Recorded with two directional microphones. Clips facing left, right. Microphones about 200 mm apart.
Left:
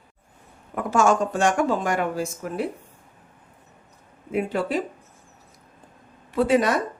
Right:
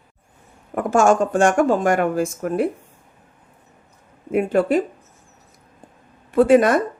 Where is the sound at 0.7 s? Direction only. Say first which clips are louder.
Right 4 dB; 45° right (ahead or behind).